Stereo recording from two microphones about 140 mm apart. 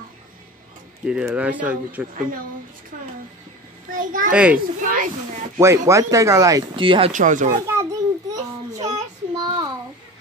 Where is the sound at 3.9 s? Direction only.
75° right (ahead or behind).